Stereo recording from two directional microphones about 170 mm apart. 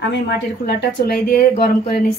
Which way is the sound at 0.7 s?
65° left (ahead or behind).